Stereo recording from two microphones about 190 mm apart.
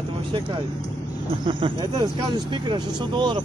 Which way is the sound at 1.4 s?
25° right (ahead or behind).